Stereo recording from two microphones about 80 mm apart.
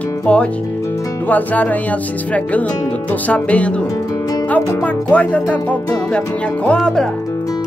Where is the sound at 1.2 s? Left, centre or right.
Left.